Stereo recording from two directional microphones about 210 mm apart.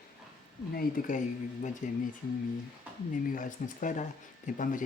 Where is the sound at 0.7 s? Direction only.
40° left (ahead or behind).